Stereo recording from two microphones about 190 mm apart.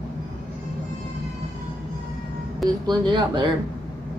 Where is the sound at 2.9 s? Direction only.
25° right (ahead or behind).